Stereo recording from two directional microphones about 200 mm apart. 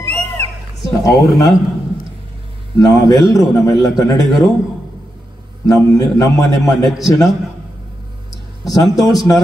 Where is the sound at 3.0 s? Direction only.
20° left (ahead or behind).